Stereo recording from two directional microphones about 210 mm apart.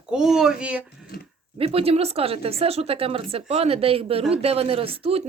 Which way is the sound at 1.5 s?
25° right (ahead or behind).